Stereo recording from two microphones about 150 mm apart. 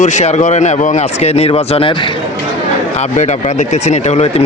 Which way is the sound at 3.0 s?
50° left (ahead or behind).